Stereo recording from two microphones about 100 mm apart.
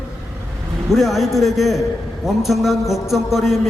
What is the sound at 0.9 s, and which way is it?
A man's voice, centre (ahead or behind).